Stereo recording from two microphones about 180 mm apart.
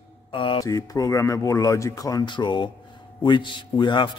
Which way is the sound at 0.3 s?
30° left (ahead or behind).